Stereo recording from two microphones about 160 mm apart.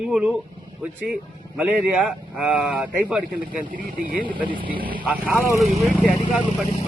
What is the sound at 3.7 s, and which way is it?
Speech, 60° right (ahead or behind).